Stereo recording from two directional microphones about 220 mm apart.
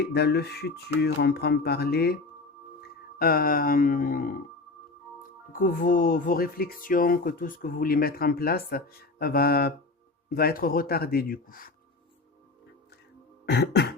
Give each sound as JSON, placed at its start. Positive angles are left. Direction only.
{"t": 0.0, "sound": "speech", "side_deg": 50}
{"t": 3.2, "sound": "speech", "side_deg": 40}
{"t": 5.5, "sound": "speech", "side_deg": 40}
{"t": 13.4, "sound": "beatboxing", "side_deg": 50}